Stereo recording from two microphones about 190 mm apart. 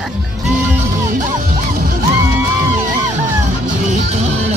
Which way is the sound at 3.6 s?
40° right (ahead or behind).